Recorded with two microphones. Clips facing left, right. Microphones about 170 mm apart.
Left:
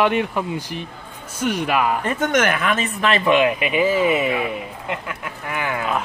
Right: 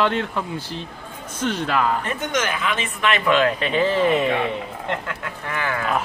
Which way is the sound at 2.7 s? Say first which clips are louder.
Left 2 dB; 40° left (ahead or behind).